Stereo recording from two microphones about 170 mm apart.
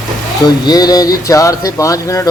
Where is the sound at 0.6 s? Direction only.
20° left (ahead or behind).